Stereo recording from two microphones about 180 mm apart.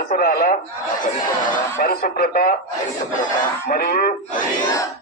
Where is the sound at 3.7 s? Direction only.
55° left (ahead or behind).